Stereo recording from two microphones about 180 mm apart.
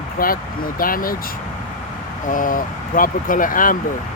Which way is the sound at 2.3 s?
50° left (ahead or behind).